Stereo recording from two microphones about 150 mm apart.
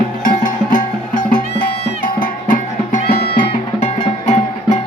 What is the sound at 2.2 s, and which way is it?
Music, 60° left (ahead or behind).